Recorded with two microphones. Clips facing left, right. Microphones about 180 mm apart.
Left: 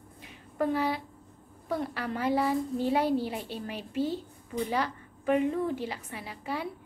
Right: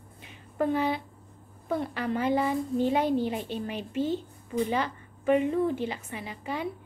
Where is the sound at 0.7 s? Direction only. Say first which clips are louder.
Right 2 dB; 5° left (ahead or behind).